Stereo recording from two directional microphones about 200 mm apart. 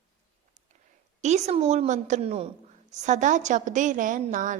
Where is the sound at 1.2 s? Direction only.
35° right (ahead or behind).